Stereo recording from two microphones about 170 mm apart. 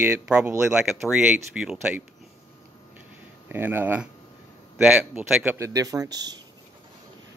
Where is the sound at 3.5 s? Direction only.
10° right (ahead or behind).